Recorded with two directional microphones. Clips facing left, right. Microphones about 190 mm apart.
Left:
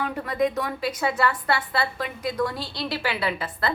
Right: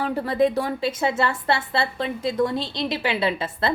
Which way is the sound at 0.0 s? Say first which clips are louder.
Right 4 dB; 30° right (ahead or behind).